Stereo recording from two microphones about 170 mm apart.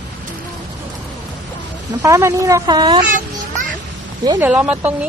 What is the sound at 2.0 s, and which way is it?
Speech, 20° right (ahead or behind).